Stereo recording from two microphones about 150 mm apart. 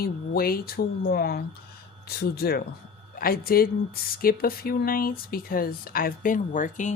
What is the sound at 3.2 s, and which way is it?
Speech, 80° left.